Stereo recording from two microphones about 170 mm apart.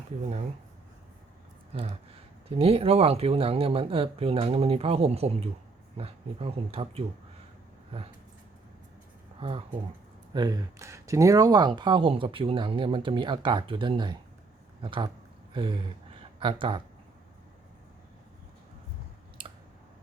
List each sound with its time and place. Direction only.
1.7 s speech: 35° right (ahead or behind)
9.4 s speech: 35° right (ahead or behind)
10.3 s speech: 25° right (ahead or behind)
19.4 s clicking: 30° right (ahead or behind)